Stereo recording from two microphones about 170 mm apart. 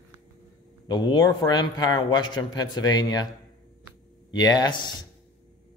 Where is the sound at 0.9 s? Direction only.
25° left (ahead or behind).